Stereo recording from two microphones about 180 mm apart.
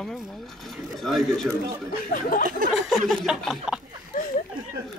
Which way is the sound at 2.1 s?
50° left (ahead or behind).